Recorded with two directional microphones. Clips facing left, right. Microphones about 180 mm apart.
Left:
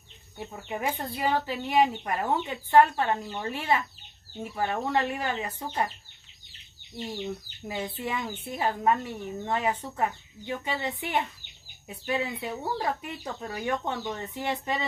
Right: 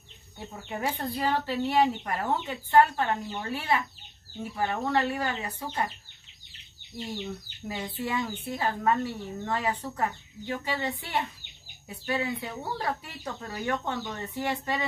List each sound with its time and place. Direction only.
0.7 s speech: 15° left (ahead or behind)
7.6 s speech: 20° left (ahead or behind)